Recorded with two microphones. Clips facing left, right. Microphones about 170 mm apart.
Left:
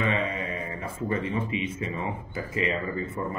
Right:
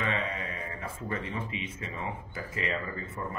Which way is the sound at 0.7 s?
15° left (ahead or behind).